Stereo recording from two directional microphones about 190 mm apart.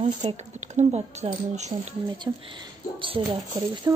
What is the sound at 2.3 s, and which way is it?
A woman's voice, 20° right (ahead or behind).